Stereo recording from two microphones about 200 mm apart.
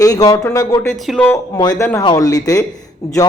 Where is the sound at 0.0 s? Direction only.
20° left (ahead or behind).